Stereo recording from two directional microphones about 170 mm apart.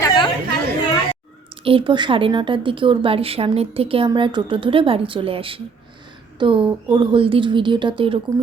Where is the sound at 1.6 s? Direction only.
30° right (ahead or behind).